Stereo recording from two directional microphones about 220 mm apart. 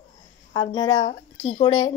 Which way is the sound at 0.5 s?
20° left (ahead or behind).